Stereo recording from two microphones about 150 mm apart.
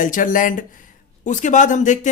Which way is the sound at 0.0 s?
60° left (ahead or behind).